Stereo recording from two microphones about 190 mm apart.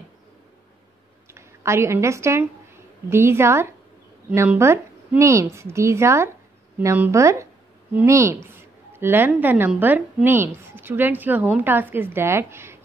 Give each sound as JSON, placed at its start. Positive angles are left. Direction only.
{"t": 1.3, "sound": "a woman's voice", "side_deg": -15}